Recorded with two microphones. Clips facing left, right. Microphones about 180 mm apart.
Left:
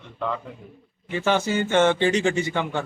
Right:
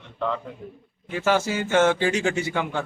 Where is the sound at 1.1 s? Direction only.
5° right (ahead or behind).